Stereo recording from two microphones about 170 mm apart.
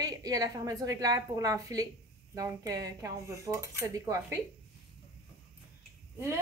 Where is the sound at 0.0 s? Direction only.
20° right (ahead or behind).